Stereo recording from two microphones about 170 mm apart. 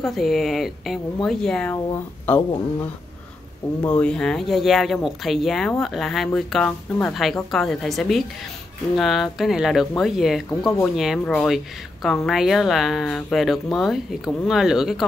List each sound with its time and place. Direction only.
0.0 s speech: centre (ahead or behind)